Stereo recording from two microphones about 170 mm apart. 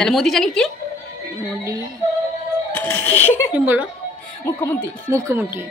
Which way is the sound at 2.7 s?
10° left (ahead or behind).